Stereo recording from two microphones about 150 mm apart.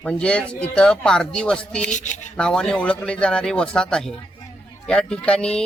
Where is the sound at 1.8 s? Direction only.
55° left (ahead or behind).